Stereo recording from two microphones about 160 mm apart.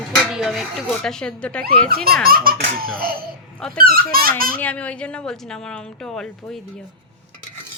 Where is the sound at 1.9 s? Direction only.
70° right (ahead or behind).